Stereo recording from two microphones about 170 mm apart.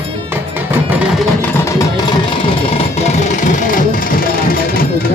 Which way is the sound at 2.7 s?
40° left (ahead or behind).